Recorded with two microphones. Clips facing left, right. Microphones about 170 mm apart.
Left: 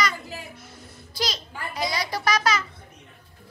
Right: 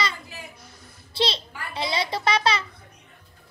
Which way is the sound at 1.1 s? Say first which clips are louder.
Right 4 dB; 30° right (ahead or behind).